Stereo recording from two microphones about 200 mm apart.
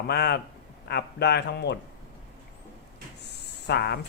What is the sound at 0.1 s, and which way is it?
A man's voice, 55° left (ahead or behind).